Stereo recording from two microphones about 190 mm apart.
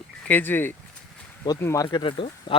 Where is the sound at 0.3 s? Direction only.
10° left (ahead or behind).